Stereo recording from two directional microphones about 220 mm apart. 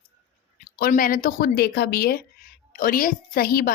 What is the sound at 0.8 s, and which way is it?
A woman's voice, 40° left (ahead or behind).